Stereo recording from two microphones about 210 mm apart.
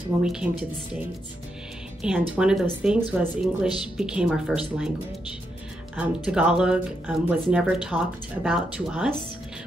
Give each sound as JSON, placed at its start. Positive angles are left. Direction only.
{"t": 0.2, "sound": "speech", "side_deg": -5}
{"t": 5.9, "sound": "speech", "side_deg": -5}